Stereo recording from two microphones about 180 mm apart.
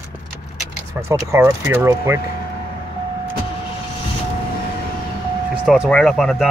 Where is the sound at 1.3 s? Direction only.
15° right (ahead or behind).